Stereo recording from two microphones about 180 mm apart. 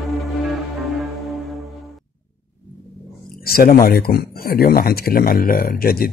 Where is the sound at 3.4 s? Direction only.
55° left (ahead or behind).